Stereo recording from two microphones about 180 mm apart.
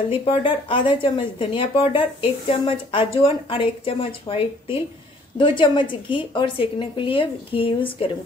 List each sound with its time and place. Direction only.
0.2 s speech: 30° left (ahead or behind)